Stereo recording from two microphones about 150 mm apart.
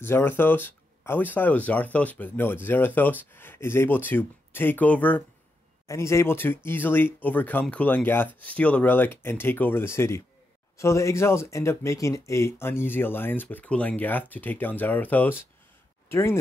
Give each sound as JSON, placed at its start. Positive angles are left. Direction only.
{"t": 0.0, "sound": "speech", "side_deg": 15}